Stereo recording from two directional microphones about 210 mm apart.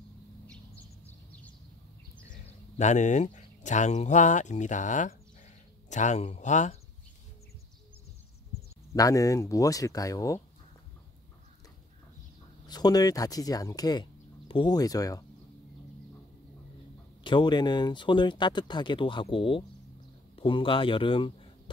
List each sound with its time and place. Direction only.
1.0 s a sound: 5° left (ahead or behind)
2.8 s speech: 35° left (ahead or behind)
8.9 s speech: 15° left (ahead or behind)
12.6 s speech: 20° left (ahead or behind)
17.2 s speech: 20° left (ahead or behind)